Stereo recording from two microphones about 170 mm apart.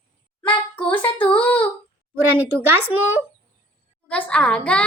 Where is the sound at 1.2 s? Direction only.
10° left (ahead or behind).